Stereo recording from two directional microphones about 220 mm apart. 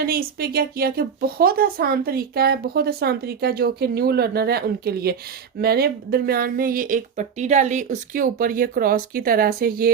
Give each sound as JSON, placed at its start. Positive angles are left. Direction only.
{"t": 0.1, "sound": "speech", "side_deg": -45}